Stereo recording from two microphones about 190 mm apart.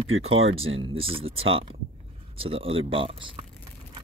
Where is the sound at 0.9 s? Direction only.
30° right (ahead or behind).